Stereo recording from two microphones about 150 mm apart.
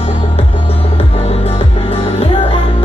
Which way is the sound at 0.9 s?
40° left (ahead or behind).